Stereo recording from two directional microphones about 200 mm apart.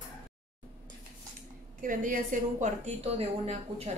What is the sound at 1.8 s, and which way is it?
A woman's voice, 40° right (ahead or behind).